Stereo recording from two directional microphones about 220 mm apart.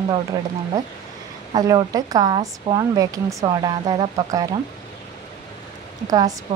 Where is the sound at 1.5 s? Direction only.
15° right (ahead or behind).